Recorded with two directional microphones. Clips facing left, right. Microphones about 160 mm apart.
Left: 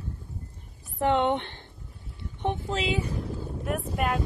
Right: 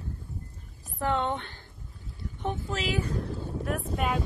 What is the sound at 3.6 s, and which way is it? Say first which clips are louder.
Speech: left 2 dB; centre (ahead or behind).